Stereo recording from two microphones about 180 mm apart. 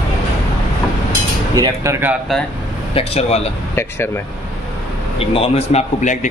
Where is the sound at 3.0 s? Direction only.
35° left (ahead or behind).